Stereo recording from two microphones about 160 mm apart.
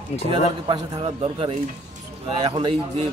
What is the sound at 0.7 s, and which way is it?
A man's voice, 35° right (ahead or behind).